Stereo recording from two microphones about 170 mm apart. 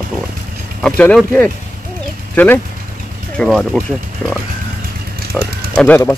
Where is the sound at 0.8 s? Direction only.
5° left (ahead or behind).